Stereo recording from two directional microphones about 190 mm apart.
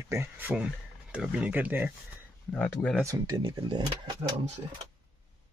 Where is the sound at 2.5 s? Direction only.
5° left (ahead or behind).